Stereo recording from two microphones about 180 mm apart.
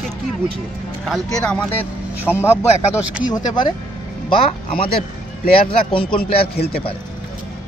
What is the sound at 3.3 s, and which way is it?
A man's voice, 25° left (ahead or behind).